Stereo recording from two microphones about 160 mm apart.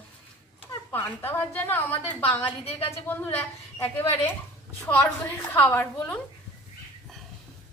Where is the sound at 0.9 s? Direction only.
15° left (ahead or behind).